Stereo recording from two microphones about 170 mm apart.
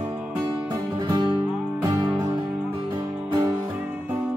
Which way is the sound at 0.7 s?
25° right (ahead or behind).